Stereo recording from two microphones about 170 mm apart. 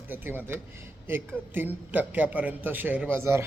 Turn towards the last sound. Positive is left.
turn(degrees=-15)  # may be behind; listen again after turning